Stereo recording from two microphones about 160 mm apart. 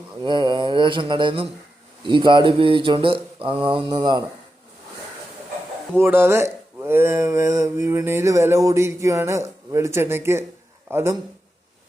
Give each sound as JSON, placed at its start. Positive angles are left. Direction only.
{"t": 0.2, "sound": "mantra", "side_deg": -30}
{"t": 6.0, "sound": "speech", "side_deg": -15}